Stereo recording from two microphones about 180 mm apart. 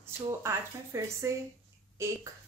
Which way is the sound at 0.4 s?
15° right (ahead or behind).